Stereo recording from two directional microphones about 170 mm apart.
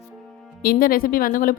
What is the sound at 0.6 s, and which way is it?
Speech, 60° left (ahead or behind).